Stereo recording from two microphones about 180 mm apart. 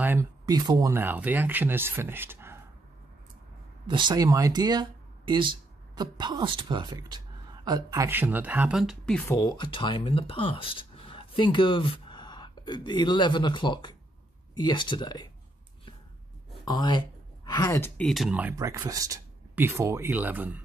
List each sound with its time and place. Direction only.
0.0 s a sound: 10° right (ahead or behind)
0.5 s speech: 20° right (ahead or behind)
3.8 s a man's voice: 25° right (ahead or behind)
8.1 s speech: 10° right (ahead or behind)
9.3 s speech: 20° left (ahead or behind)
16.6 s speech: 25° left (ahead or behind); by 18.5 s 5° right (ahead or behind)
18.5 s speech: 20° right (ahead or behind)